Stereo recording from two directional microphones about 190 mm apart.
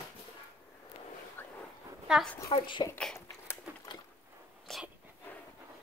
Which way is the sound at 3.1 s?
15° left (ahead or behind).